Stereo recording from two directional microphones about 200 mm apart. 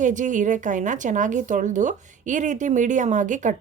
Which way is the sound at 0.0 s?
40° right (ahead or behind).